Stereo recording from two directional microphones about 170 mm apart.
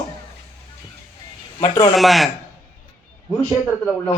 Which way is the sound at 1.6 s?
20° left (ahead or behind).